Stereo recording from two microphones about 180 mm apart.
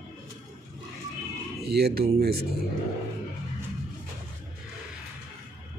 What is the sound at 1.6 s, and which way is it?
Speech, 65° right (ahead or behind).